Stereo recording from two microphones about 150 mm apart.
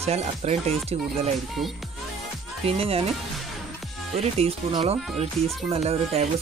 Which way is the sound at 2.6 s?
40° right (ahead or behind).